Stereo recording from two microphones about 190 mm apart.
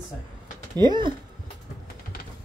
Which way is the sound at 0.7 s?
25° right (ahead or behind).